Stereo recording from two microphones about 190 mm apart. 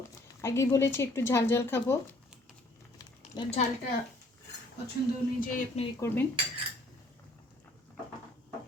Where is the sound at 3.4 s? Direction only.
20° left (ahead or behind).